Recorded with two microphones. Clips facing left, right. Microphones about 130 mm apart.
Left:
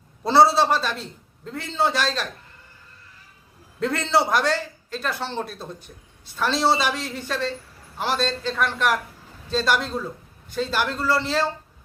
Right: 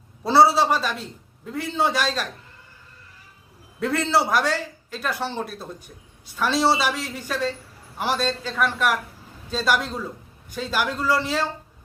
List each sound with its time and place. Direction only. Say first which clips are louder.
0.3 s a man's voice: even; 10° right (ahead or behind)
3.8 s a man's voice: even; 5° right (ahead or behind)